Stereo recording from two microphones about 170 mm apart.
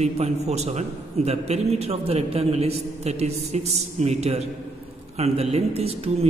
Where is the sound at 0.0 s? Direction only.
40° right (ahead or behind).